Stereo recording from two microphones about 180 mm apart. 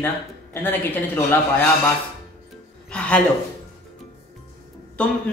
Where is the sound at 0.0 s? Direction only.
10° left (ahead or behind).